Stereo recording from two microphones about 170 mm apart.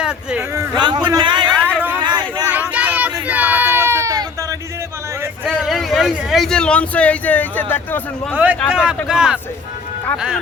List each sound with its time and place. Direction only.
0.0 s speech: 5° right (ahead or behind)
0.5 s a man's voice: 20° right (ahead or behind)
2.0 s a sound: 25° right (ahead or behind)
2.5 s a sound: 10° right (ahead or behind)
5.5 s speech: centre (ahead or behind)
8.3 s a man's voice: 10° right (ahead or behind)